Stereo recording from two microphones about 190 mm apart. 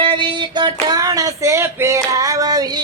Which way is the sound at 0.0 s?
25° right (ahead or behind).